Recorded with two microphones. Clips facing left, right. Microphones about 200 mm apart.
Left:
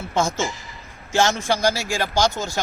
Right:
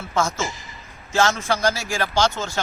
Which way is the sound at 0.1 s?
30° left (ahead or behind).